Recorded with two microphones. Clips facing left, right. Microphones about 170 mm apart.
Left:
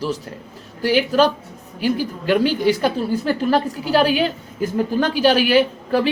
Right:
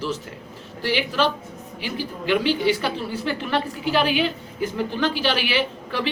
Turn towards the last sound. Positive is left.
turn(degrees=45)  # may be behind; listen again after turning